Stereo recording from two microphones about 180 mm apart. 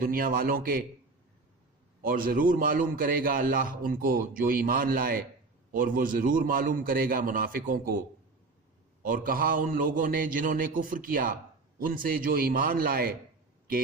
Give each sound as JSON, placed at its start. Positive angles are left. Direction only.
{"t": 0.0, "sound": "a man's voice", "side_deg": -50}
{"t": 2.0, "sound": "a man's voice", "side_deg": -55}
{"t": 9.0, "sound": "a man's voice", "side_deg": -50}